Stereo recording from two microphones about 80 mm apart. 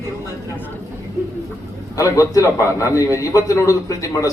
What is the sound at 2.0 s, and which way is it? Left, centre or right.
A man's voice, left.